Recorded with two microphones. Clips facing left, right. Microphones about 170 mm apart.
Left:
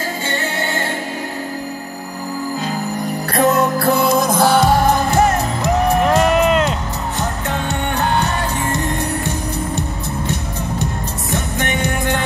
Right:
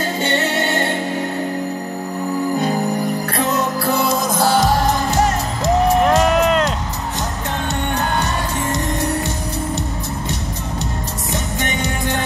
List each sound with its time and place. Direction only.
0.3 s music: 20° right (ahead or behind)
3.3 s music: 55° left (ahead or behind)
6.0 s music: 5° left (ahead or behind)
11.3 s music: 55° left (ahead or behind)